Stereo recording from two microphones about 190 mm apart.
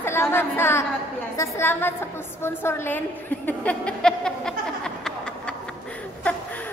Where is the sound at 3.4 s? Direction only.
5° left (ahead or behind).